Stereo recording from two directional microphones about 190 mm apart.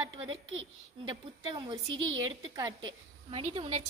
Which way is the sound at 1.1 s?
25° right (ahead or behind).